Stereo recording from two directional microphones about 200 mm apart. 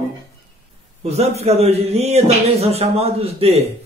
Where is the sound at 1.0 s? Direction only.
30° right (ahead or behind).